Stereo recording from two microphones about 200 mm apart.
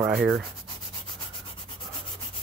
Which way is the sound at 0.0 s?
5° right (ahead or behind).